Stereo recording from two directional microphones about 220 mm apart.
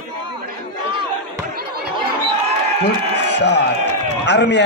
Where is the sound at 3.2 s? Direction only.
50° left (ahead or behind).